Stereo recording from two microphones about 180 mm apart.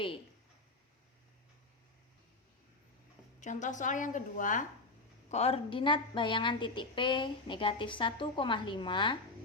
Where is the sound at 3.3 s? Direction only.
45° left (ahead or behind).